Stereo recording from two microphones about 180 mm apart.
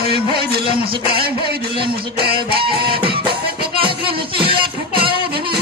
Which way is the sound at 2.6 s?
30° right (ahead or behind).